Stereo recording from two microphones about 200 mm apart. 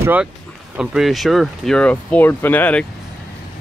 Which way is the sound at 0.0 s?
10° right (ahead or behind).